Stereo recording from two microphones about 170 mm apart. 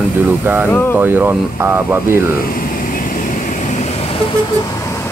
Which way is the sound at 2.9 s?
55° left (ahead or behind).